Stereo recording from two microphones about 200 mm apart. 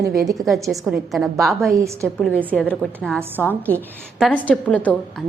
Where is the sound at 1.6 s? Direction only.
15° right (ahead or behind).